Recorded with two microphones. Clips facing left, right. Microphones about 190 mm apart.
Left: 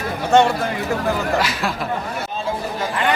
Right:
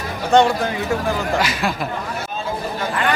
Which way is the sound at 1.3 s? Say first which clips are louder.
Right 1 dB; centre (ahead or behind).